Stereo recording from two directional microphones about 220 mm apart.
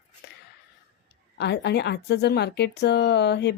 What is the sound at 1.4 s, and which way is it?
A woman's voice, 50° left (ahead or behind).